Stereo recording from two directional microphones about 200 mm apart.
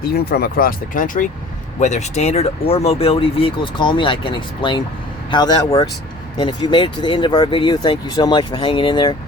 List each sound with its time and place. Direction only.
0.3 s speech: 50° left (ahead or behind); by 9.1 s 25° left (ahead or behind)